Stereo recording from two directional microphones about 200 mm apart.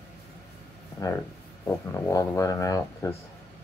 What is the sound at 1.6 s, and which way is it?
Speech, 15° left (ahead or behind).